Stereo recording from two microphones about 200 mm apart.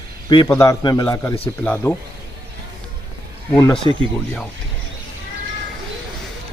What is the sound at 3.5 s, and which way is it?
Speech, 5° left (ahead or behind).